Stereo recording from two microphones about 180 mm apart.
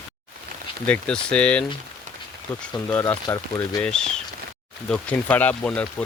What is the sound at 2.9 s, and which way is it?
Speech, 10° left (ahead or behind).